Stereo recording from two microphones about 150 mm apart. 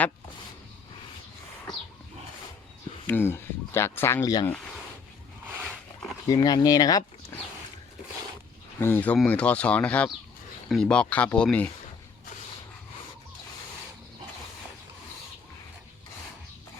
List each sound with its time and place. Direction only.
3.1 s speech: 15° left (ahead or behind)
6.2 s speech: 25° left (ahead or behind)
8.8 s speech: 10° left (ahead or behind)